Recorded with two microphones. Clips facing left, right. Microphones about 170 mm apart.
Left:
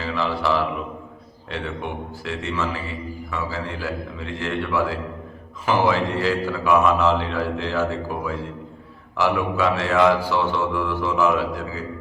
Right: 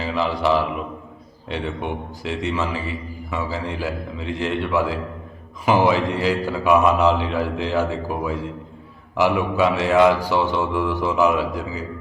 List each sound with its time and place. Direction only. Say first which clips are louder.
0.0 s mantra: right 2 dB; 20° right (ahead or behind)
1.5 s speech: right 3 dB; 20° right (ahead or behind)